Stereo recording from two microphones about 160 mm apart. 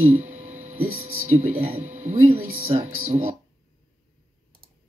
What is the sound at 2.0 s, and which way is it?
Speech, 45° right (ahead or behind).